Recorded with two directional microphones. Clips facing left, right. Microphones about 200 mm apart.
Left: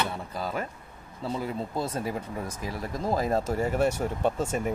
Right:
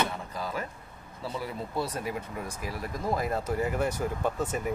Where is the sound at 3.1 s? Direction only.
30° left (ahead or behind).